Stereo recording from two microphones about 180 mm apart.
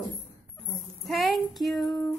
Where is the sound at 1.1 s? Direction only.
Centre (ahead or behind).